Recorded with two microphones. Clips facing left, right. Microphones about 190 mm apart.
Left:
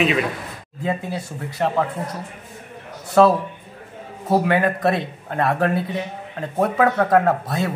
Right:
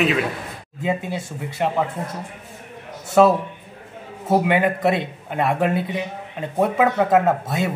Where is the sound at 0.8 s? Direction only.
20° right (ahead or behind).